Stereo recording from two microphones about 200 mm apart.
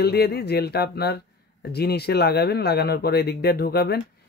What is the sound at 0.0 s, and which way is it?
Speech, 50° left (ahead or behind).